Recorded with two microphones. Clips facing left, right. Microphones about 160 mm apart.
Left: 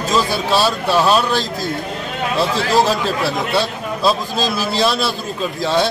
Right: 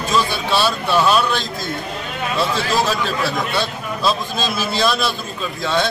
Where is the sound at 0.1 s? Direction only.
40° left (ahead or behind).